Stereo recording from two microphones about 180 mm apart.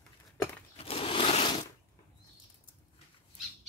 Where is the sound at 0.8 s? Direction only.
35° left (ahead or behind).